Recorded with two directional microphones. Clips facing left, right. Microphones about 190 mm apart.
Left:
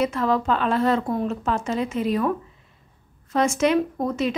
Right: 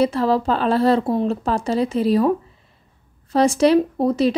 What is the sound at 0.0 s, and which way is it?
Speech, 35° right (ahead or behind).